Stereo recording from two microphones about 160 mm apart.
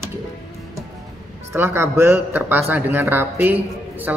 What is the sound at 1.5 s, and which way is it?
Speech, 15° right (ahead or behind).